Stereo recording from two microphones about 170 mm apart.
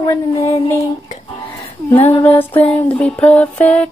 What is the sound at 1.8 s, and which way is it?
Female singing, 10° left (ahead or behind).